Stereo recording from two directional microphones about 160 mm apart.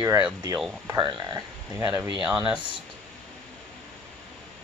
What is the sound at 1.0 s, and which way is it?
Speech, 25° right (ahead or behind).